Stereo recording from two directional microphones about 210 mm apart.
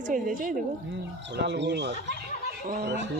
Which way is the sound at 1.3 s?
55° right (ahead or behind).